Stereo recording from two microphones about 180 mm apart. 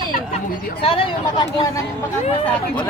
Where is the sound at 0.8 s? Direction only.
30° left (ahead or behind).